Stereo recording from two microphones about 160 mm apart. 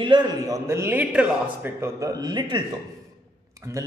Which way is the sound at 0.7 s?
15° right (ahead or behind).